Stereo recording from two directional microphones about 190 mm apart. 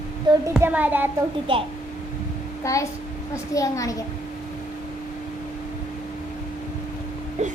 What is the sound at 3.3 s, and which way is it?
Speech, 15° left (ahead or behind).